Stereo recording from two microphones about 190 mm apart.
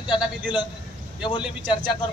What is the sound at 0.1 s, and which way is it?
Speech, 25° left (ahead or behind).